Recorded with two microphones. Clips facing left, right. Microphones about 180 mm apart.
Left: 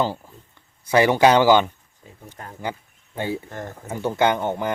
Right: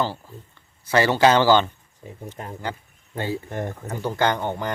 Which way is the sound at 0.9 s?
15° left (ahead or behind).